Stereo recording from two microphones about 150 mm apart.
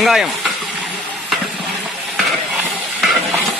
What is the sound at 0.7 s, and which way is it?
Stir, 5° right (ahead or behind).